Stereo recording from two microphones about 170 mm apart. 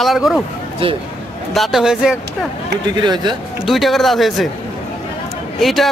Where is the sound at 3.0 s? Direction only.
25° right (ahead or behind).